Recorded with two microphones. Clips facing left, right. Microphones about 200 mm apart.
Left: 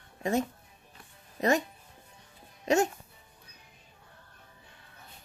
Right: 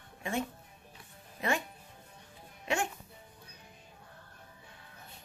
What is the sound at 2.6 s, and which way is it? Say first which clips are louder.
Speech: left 8 dB; 40° left (ahead or behind).